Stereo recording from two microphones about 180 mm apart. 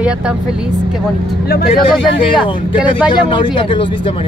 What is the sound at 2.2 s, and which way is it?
Speech, 30° left (ahead or behind).